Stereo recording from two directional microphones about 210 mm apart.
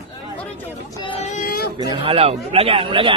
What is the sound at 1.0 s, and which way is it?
Speech, 25° left (ahead or behind).